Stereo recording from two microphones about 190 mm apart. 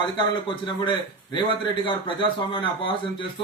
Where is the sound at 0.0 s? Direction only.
25° left (ahead or behind).